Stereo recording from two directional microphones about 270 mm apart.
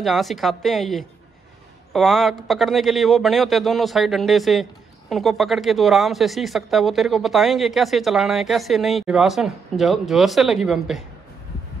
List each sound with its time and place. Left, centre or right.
0.0 s speech: centre